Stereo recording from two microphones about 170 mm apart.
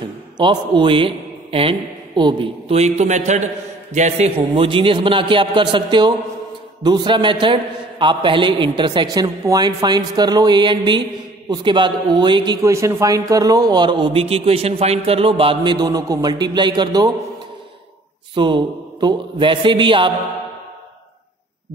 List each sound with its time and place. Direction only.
0.4 s a man's voice: 25° right (ahead or behind)
18.3 s a man's voice: 25° right (ahead or behind)